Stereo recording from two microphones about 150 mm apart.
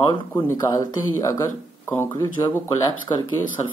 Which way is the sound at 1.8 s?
15° left (ahead or behind).